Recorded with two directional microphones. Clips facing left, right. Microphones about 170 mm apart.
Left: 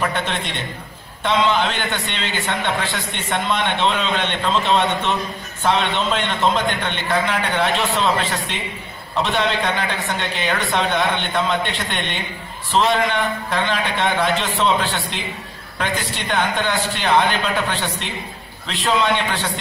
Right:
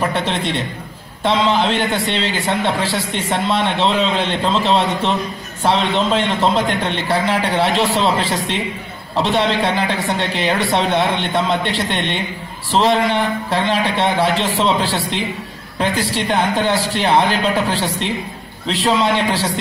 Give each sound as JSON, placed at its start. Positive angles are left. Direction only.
{"t": 0.0, "sound": "a woman's voice", "side_deg": -30}